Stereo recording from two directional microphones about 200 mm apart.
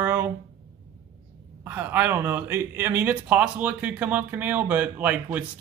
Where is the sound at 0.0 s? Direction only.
10° right (ahead or behind).